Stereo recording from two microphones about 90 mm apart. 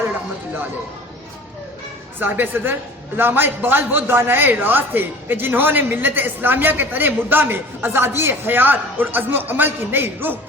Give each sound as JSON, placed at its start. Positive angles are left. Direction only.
{"t": 2.1, "sound": "speech", "side_deg": -20}